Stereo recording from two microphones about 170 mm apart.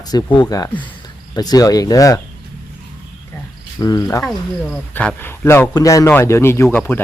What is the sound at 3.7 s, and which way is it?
Speech, 20° left (ahead or behind).